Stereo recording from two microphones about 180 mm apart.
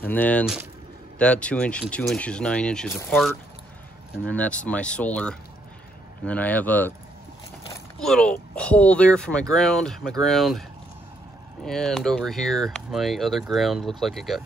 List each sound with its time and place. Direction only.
0.0 s speech: 10° left (ahead or behind)
8.0 s speech: 5° left (ahead or behind)
11.6 s speech: 5° left (ahead or behind)